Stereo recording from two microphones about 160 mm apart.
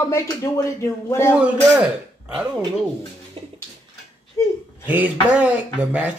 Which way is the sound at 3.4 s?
35° right (ahead or behind).